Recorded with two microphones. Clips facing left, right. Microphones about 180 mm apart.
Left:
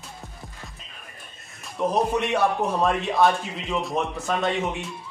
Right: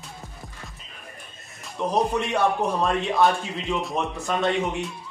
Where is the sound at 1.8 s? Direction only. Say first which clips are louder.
Left 1 dB; centre (ahead or behind).